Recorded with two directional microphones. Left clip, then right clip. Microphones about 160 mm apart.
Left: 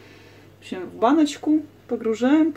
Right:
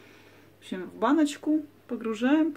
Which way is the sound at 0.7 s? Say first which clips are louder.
Left 6 dB; 15° right (ahead or behind).